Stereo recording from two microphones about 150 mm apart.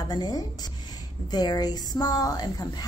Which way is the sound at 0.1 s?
25° left (ahead or behind).